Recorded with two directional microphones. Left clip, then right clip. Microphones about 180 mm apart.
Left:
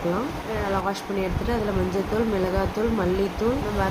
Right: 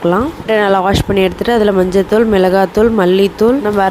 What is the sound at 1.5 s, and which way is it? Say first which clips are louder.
A woman's voice: right 15 dB; 55° right (ahead or behind).